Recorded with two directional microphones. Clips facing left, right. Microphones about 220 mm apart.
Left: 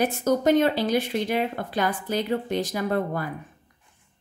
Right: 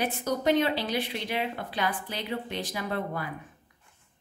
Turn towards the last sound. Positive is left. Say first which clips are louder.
# left 6 dB
turn(degrees=45)  # may be behind; listen again after turning